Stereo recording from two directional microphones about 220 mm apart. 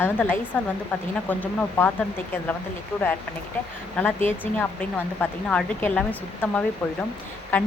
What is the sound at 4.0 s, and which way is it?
Speech, 10° left (ahead or behind).